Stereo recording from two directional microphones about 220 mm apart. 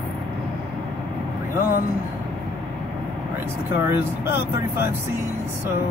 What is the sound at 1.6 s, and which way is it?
Speech, 40° left (ahead or behind).